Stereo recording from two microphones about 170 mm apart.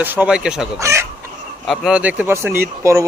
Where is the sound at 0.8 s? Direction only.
15° right (ahead or behind).